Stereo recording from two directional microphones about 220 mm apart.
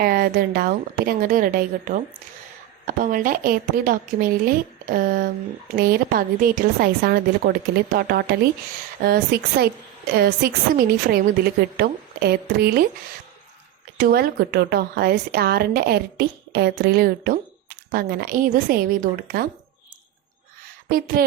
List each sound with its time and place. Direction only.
0.0 s a woman's voice: 45° right (ahead or behind)
14.0 s a woman's voice: 40° right (ahead or behind)
20.9 s speech: 40° right (ahead or behind)